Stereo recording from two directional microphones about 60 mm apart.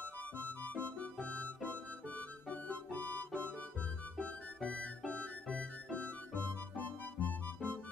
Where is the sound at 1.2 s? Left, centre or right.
Left.